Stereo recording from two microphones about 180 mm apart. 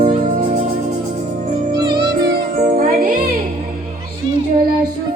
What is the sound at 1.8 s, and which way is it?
Music, 25° right (ahead or behind).